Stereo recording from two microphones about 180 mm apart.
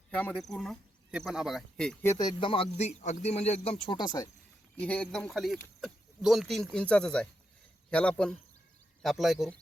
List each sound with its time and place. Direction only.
0.1 s speech: 5° left (ahead or behind)
2.0 s a man's voice: 20° left (ahead or behind)
4.8 s a man's voice: 5° left (ahead or behind)